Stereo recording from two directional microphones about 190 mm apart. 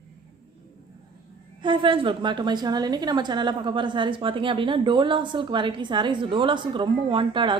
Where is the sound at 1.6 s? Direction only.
25° right (ahead or behind).